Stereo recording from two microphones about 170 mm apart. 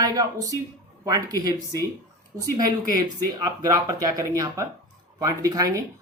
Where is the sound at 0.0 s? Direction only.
20° right (ahead or behind).